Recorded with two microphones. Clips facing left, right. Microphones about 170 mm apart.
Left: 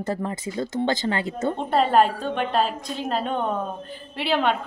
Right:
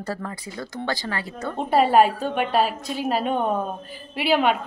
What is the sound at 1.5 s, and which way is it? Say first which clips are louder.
A woman's voice: right 3 dB; 10° right (ahead or behind).